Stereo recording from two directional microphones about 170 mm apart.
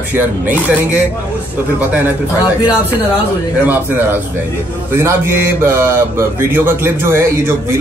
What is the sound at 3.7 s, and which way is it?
A man's voice, 10° right (ahead or behind).